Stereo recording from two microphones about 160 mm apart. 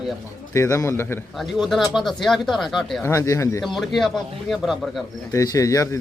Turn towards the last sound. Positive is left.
turn(degrees=20)  # may be behind; listen again after turning